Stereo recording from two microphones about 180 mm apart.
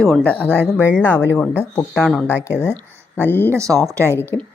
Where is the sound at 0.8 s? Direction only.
10° right (ahead or behind).